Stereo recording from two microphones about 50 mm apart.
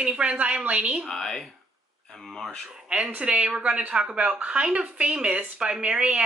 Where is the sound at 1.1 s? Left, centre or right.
Centre.